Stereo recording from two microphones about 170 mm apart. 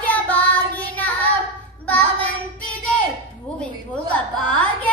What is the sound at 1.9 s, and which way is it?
Child singing, 10° left (ahead or behind).